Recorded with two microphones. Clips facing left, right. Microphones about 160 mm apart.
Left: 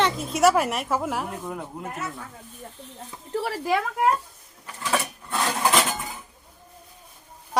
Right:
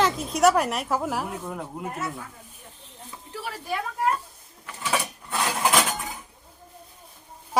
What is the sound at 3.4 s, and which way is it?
Speech, 90° left.